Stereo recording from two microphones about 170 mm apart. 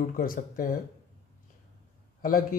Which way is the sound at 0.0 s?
55° left (ahead or behind).